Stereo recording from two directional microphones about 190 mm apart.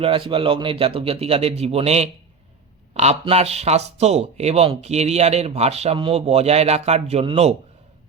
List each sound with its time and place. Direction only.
0.0 s speech: 30° right (ahead or behind)